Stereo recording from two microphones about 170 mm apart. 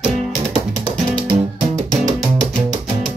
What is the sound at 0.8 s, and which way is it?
Music, 25° right (ahead or behind).